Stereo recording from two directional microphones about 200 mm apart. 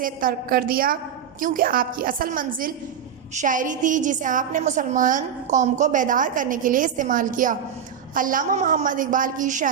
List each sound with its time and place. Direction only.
0.0 s a woman's voice: 45° right (ahead or behind)